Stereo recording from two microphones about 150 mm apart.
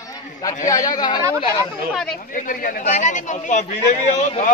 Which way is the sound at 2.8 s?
55° left (ahead or behind).